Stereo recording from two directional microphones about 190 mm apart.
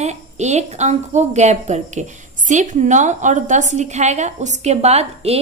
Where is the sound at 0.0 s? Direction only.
35° right (ahead or behind).